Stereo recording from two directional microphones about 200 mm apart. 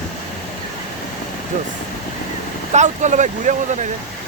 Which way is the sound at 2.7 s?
35° right (ahead or behind).